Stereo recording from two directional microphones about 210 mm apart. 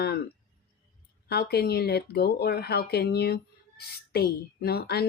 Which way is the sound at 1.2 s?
50° left (ahead or behind).